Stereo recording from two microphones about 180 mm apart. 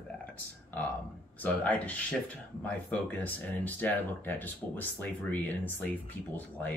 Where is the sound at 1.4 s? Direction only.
10° left (ahead or behind).